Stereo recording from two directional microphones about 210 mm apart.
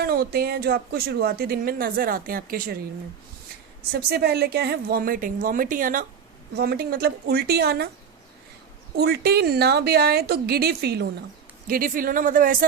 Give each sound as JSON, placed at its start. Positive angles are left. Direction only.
{"t": 0.0, "sound": "speech", "side_deg": -45}
{"t": 3.9, "sound": "speech", "side_deg": -50}
{"t": 9.0, "sound": "speech", "side_deg": -50}